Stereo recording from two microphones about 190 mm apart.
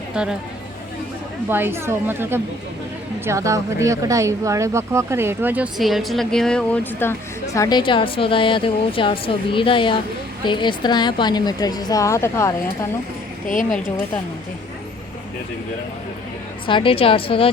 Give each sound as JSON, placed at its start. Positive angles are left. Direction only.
{"t": 0.1, "sound": "speech", "side_deg": -5}
{"t": 1.5, "sound": "speech", "side_deg": -10}
{"t": 13.5, "sound": "a woman's voice", "side_deg": 45}
{"t": 16.6, "sound": "speech", "side_deg": 25}